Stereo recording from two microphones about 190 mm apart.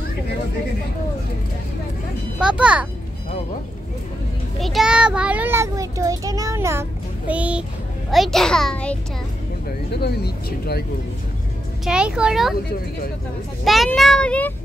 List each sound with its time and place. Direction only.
2.4 s a child's voice: 5° right (ahead or behind)
4.6 s a child's voice: centre (ahead or behind)
9.8 s speech: 55° left (ahead or behind)
11.8 s a child's voice: 5° right (ahead or behind)
13.7 s a child's voice: centre (ahead or behind)